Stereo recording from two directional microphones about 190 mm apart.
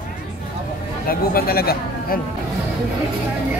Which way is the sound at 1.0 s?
50° left (ahead or behind).